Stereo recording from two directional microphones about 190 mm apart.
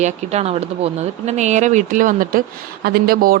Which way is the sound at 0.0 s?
35° right (ahead or behind).